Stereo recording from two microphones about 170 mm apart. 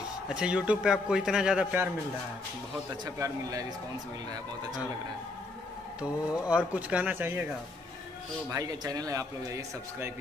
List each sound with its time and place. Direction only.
0.3 s a man's voice: 5° right (ahead or behind)
3.2 s a man's voice: 20° right (ahead or behind)
5.9 s speech: 5° right (ahead or behind)
8.5 s a man's voice: 20° right (ahead or behind)